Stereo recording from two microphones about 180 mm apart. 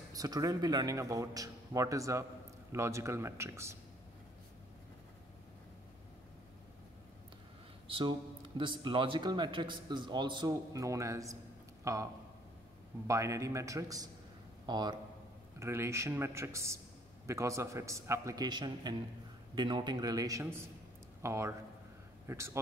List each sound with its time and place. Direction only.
0.1 s a man's voice: 20° right (ahead or behind)
7.9 s a man's voice: 25° right (ahead or behind)